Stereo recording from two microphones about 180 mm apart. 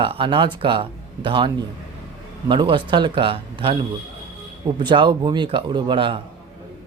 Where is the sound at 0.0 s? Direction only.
30° right (ahead or behind).